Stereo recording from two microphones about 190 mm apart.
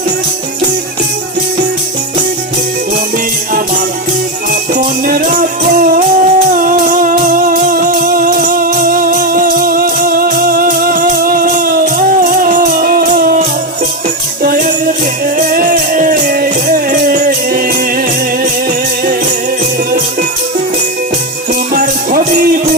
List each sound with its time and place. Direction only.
4.7 s music: 50° right (ahead or behind)
14.4 s music: 50° right (ahead or behind)
21.7 s music: 45° right (ahead or behind)